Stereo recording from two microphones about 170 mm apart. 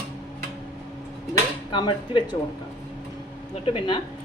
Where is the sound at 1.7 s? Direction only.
25° left (ahead or behind).